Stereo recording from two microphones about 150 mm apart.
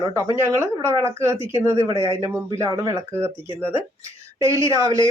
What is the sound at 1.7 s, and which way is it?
Speech, 35° left (ahead or behind).